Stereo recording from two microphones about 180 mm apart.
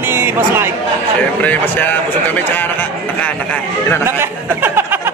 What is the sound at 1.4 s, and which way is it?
Speech, 10° left (ahead or behind).